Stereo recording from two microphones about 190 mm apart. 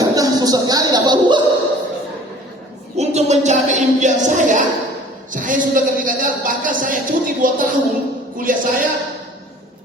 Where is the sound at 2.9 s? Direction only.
35° right (ahead or behind).